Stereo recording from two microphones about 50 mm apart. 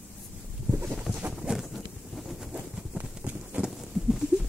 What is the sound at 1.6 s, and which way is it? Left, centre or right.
Wind noise, centre.